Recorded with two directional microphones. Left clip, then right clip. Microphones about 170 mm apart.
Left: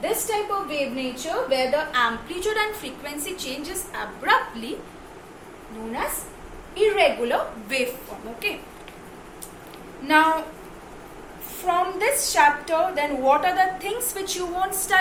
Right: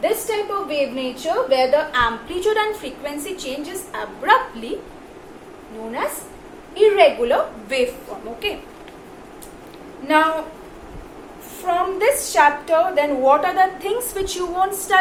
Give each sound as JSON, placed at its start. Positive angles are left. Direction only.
{"t": 0.0, "sound": "a woman's voice", "side_deg": 15}
{"t": 6.7, "sound": "a woman's voice", "side_deg": 10}
{"t": 10.1, "sound": "a woman's voice", "side_deg": 20}
{"t": 11.6, "sound": "a woman's voice", "side_deg": 15}